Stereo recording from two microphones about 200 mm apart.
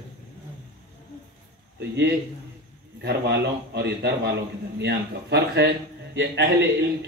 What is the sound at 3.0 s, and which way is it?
A man's voice, 55° right (ahead or behind).